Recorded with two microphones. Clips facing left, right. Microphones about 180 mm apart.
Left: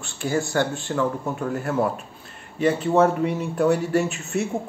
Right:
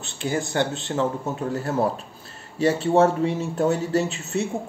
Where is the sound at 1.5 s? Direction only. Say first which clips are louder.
Even; 35° right (ahead or behind).